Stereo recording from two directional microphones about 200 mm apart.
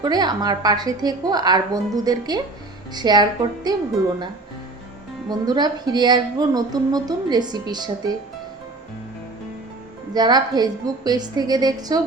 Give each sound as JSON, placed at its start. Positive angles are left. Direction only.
{"t": 0.0, "sound": "speech", "side_deg": -20}
{"t": 5.3, "sound": "speech", "side_deg": -20}
{"t": 10.2, "sound": "speech", "side_deg": -20}